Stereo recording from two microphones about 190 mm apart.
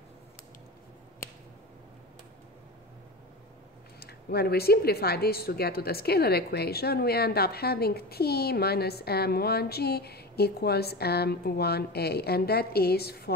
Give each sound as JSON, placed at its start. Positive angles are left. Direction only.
{"t": 4.0, "sound": "speech", "side_deg": 55}